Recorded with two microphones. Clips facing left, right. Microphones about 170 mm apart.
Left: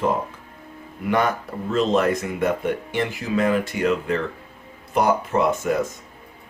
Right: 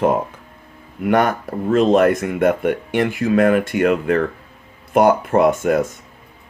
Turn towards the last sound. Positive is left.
turn(degrees=-60)  # may be behind; listen again after turning